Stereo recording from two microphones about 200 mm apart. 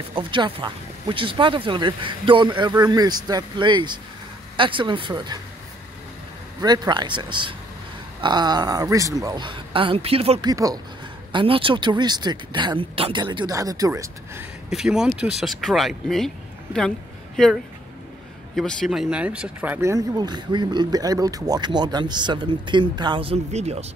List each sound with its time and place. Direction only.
0.1 s speech: 25° right (ahead or behind)
6.6 s speech: 20° right (ahead or behind)
10.5 s speech: 15° right (ahead or behind)
14.7 s speech: centre (ahead or behind)
18.6 s speech: centre (ahead or behind); by 23.9 s 30° right (ahead or behind)